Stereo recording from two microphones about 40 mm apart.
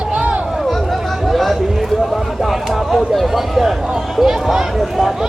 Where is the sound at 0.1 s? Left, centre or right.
Right.